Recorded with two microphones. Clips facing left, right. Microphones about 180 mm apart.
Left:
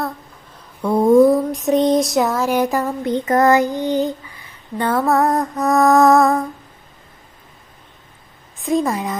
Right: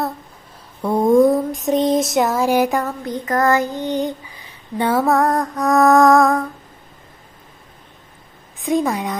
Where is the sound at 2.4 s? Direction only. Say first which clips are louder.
Right 2 dB; 10° right (ahead or behind).